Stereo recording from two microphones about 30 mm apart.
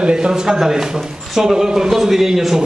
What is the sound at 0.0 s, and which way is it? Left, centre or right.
A man's voice, right.